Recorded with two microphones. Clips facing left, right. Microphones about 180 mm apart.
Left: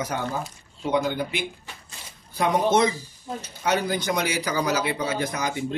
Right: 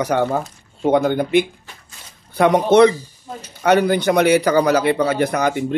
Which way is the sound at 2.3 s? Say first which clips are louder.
Right 8 dB; 65° right (ahead or behind).